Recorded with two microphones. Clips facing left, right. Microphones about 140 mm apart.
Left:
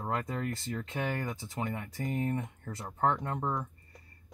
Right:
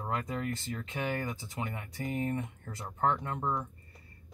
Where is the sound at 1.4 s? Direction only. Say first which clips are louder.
Left 3 dB; 40° left (ahead or behind).